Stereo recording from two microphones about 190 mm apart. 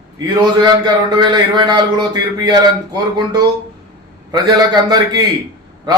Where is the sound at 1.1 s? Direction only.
25° right (ahead or behind).